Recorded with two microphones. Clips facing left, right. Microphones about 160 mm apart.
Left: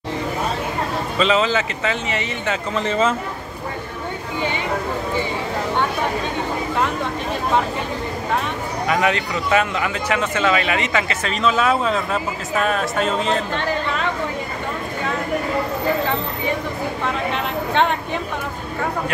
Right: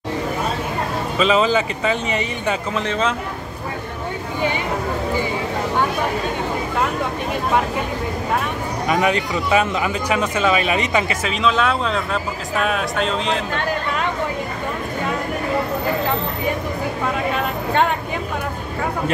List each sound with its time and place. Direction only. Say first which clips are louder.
1.1 s speech: right 2 dB; 10° right (ahead or behind)
2.7 s a man's voice: left 6 dB; centre (ahead or behind)
8.8 s speech: right 1 dB; 15° right (ahead or behind)
11.2 s a man's voice: even; centre (ahead or behind)